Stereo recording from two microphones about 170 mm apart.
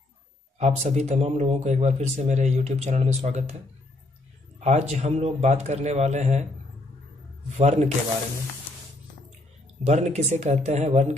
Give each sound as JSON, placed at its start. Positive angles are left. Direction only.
{"t": 0.6, "sound": "speech", "side_deg": -40}
{"t": 4.6, "sound": "a man's voice", "side_deg": -40}
{"t": 7.5, "sound": "speech", "side_deg": -40}
{"t": 9.8, "sound": "speech", "side_deg": -40}